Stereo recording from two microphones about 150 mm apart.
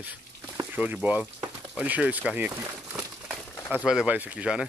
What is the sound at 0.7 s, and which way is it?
Speech, 10° right (ahead or behind).